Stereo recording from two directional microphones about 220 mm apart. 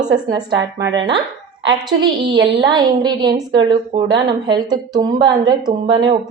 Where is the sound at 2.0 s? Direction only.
20° right (ahead or behind).